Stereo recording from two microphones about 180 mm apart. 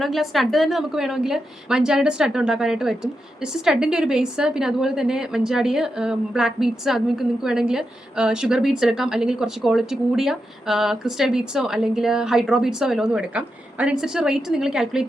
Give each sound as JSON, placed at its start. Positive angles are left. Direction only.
{"t": 0.0, "sound": "a woman's voice", "side_deg": 0}